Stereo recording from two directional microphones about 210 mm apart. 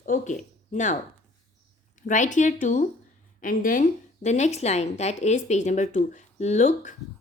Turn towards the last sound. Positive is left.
turn(degrees=35)  # may be behind; listen again after turning